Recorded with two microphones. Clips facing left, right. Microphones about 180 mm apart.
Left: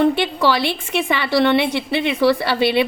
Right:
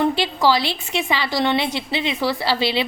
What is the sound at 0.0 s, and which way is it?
A woman's voice, 60° left (ahead or behind).